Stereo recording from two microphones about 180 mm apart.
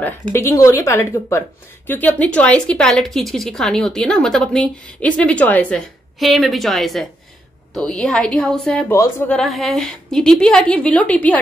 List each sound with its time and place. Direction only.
0.3 s a woman's voice: 15° left (ahead or behind)